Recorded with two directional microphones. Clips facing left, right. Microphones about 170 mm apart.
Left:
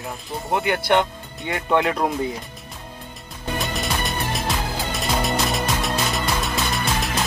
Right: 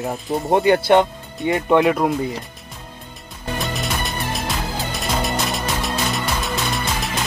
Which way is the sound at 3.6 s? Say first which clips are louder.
Right 1 dB; centre (ahead or behind).